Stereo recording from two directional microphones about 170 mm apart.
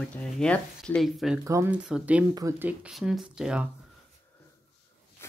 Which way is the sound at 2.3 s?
20° right (ahead or behind).